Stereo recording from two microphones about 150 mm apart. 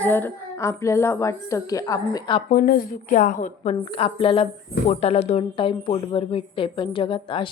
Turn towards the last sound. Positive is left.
turn(degrees=35)  # may be behind; listen again after turning